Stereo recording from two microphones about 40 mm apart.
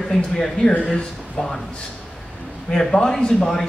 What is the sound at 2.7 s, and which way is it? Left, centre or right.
Speech, centre.